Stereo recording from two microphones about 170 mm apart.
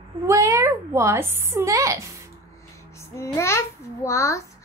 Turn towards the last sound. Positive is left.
turn(degrees=15)  # may be behind; listen again after turning